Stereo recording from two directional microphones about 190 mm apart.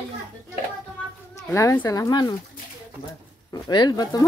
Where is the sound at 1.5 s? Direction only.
15° left (ahead or behind).